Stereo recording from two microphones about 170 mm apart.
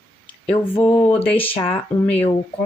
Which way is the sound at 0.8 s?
15° left (ahead or behind).